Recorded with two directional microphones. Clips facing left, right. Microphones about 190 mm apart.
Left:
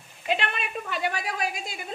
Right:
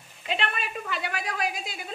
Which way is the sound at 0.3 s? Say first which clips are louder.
Left 2 dB; 45° left (ahead or behind).